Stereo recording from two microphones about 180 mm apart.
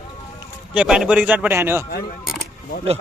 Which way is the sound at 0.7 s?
5° right (ahead or behind).